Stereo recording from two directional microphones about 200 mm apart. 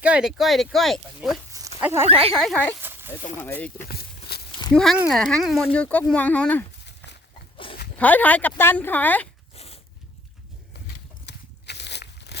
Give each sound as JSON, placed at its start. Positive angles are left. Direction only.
{"t": 0.0, "sound": "speech", "side_deg": -5}
{"t": 1.8, "sound": "speech", "side_deg": -10}
{"t": 2.0, "sound": "speech", "side_deg": -30}
{"t": 2.3, "sound": "speech", "side_deg": 5}
{"t": 4.3, "sound": "a sound", "side_deg": 55}
{"t": 4.7, "sound": "speech", "side_deg": 0}
{"t": 7.9, "sound": "speech", "side_deg": 10}
{"t": 9.6, "sound": "dog", "side_deg": 30}
{"t": 11.3, "sound": "a sound", "side_deg": 60}